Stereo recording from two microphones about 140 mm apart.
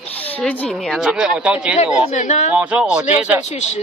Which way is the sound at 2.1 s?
55° left (ahead or behind).